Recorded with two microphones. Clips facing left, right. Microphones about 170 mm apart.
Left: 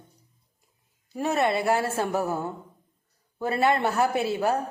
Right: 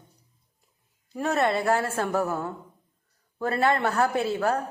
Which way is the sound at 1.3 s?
10° left (ahead or behind).